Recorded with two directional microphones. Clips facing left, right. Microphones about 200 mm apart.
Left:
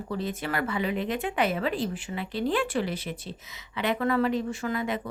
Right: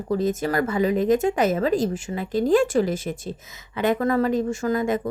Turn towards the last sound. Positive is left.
turn(degrees=-45)  # may be behind; listen again after turning